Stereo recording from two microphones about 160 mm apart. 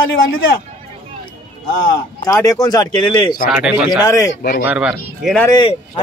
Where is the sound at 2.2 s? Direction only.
20° left (ahead or behind).